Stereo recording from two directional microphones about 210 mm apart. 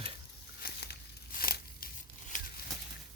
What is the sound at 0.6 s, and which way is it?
Crumpling, 45° left (ahead or behind).